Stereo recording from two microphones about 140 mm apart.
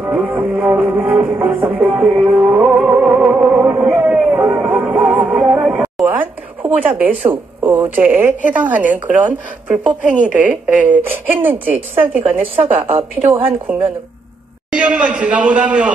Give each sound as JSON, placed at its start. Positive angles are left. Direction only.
{"t": 0.0, "sound": "music", "side_deg": -10}
{"t": 7.0, "sound": "a woman's voice", "side_deg": -10}
{"t": 11.2, "sound": "speech", "side_deg": -40}
{"t": 13.7, "sound": "a woman's voice", "side_deg": -10}